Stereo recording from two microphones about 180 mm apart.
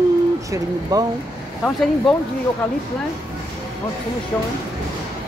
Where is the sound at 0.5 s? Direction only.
20° right (ahead or behind).